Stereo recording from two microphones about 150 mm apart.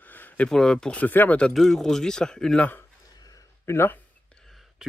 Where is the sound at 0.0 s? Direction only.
10° left (ahead or behind).